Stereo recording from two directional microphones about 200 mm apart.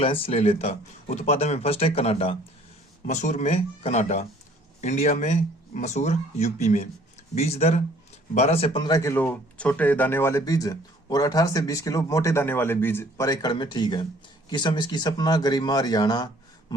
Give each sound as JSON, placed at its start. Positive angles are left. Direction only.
{"t": 0.0, "sound": "speech", "side_deg": 30}